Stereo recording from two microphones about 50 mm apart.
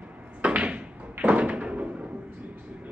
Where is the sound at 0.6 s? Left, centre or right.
Right.